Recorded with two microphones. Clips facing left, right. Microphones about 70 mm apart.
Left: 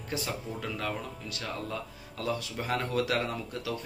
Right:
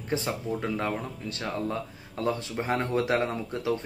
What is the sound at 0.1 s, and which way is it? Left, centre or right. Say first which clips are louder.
Speech: right 6 dB; right.